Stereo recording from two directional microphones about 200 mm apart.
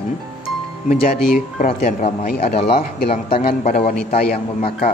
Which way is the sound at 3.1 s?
30° left (ahead or behind).